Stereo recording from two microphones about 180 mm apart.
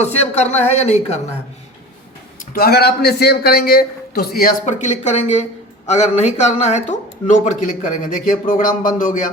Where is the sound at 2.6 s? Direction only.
60° left (ahead or behind).